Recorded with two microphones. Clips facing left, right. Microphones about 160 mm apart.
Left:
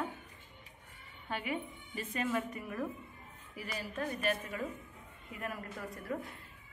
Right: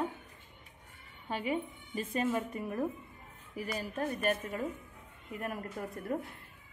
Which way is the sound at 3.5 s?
45° right (ahead or behind).